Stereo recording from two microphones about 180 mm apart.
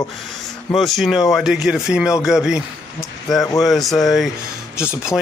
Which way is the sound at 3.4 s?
20° left (ahead or behind).